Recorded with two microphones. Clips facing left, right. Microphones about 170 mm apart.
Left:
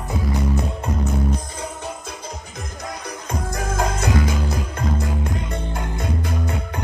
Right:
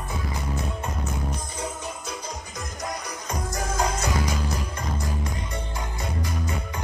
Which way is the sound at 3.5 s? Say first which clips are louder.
Left 3 dB; 55° left (ahead or behind).